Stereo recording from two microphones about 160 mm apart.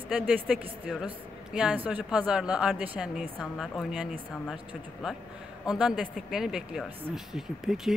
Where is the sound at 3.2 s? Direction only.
Centre (ahead or behind).